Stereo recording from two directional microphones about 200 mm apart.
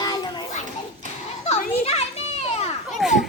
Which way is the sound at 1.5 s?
30° left (ahead or behind).